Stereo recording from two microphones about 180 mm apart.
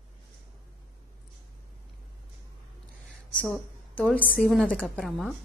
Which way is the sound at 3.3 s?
5° left (ahead or behind).